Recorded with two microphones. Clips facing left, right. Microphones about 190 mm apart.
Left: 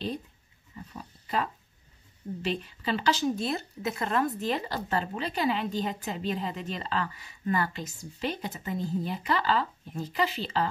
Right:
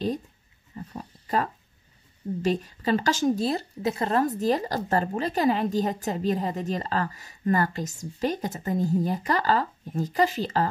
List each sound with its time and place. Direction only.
0.7 s pig: 45° right (ahead or behind)
2.4 s speech: 45° right (ahead or behind)